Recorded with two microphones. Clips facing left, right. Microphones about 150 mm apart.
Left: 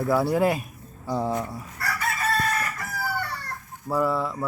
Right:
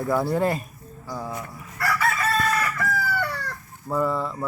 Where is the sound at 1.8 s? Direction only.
90° right.